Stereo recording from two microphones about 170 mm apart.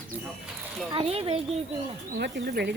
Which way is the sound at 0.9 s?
35° right (ahead or behind).